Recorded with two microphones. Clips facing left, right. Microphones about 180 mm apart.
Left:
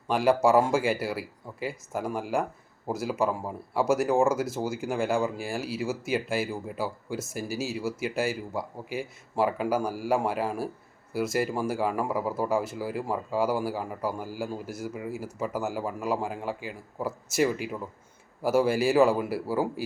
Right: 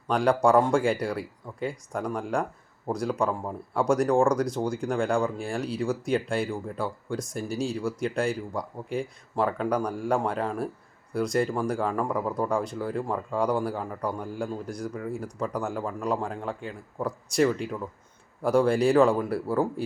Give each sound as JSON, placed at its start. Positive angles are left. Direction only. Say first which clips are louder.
{"t": 0.1, "sound": "speech", "louder": "even", "side_deg": 5}